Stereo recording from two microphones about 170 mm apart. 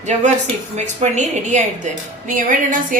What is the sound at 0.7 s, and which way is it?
A woman's voice, 45° right (ahead or behind).